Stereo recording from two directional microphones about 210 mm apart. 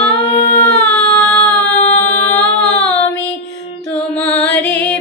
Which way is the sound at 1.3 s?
10° left (ahead or behind).